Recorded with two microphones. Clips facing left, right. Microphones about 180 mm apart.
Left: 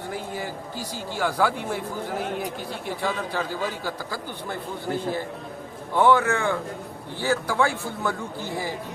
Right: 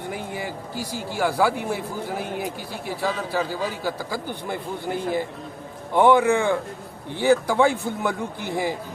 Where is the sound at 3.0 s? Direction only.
5° right (ahead or behind).